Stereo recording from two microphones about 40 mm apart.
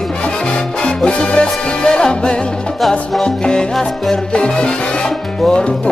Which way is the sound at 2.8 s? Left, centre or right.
Centre.